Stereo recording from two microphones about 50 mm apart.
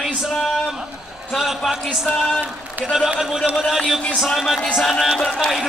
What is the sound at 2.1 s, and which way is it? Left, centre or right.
Speech, centre.